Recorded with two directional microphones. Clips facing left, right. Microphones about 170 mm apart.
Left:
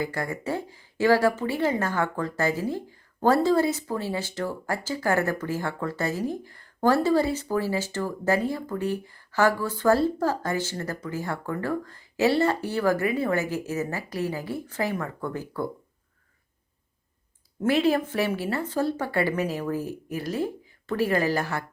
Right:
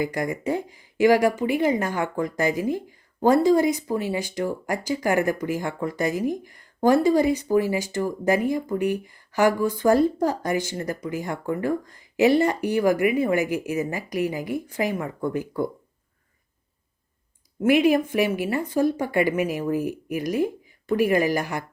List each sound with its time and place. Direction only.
0.0 s a woman's voice: 15° right (ahead or behind)
17.6 s a woman's voice: 15° right (ahead or behind)